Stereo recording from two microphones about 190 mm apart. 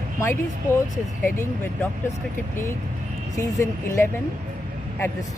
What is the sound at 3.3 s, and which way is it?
Speech, 15° left (ahead or behind).